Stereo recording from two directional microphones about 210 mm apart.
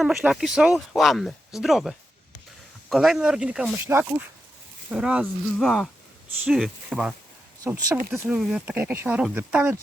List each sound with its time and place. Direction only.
0.0 s speech: centre (ahead or behind)
7.6 s speech: 15° right (ahead or behind)
8.1 s speech: centre (ahead or behind)